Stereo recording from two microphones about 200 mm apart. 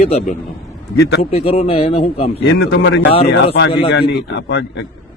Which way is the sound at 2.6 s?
70° left (ahead or behind).